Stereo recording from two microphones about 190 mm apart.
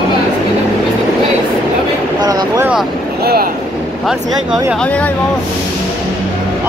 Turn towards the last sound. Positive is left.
turn(degrees=5)  # may be behind; listen again after turning